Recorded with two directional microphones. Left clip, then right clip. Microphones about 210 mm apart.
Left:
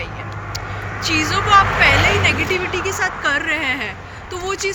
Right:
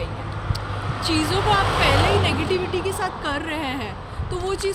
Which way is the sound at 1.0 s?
25° right (ahead or behind).